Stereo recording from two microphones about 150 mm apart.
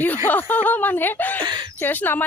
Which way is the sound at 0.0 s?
10° left (ahead or behind).